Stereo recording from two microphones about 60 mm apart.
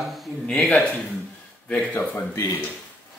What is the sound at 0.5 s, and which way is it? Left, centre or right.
Speech, left.